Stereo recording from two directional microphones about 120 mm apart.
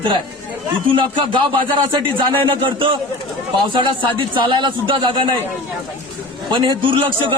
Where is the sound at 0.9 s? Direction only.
45° right (ahead or behind).